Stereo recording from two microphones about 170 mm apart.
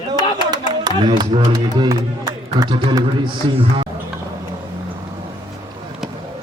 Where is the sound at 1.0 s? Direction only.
25° right (ahead or behind).